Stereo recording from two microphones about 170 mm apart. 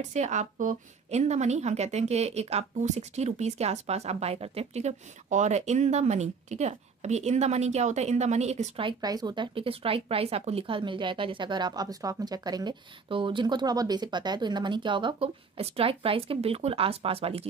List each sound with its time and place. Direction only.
0.1 s a woman's voice: 45° right (ahead or behind)
8.8 s speech: 25° right (ahead or behind)